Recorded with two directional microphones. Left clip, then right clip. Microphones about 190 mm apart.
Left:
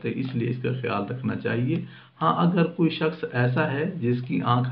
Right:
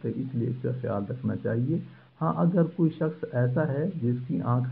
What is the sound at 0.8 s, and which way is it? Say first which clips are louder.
Speech: left 4 dB; 25° right (ahead or behind).